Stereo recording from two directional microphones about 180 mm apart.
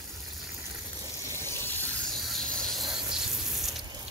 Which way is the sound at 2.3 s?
Centre (ahead or behind).